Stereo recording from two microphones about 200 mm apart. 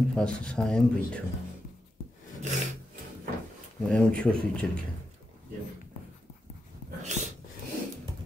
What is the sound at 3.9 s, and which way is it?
Speech, 5° left (ahead or behind).